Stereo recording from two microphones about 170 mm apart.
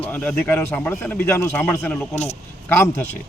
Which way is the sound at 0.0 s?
10° left (ahead or behind).